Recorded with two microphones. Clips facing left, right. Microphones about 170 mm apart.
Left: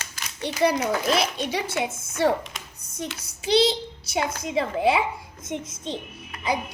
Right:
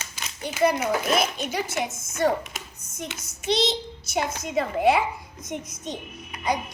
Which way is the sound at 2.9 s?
35° left (ahead or behind).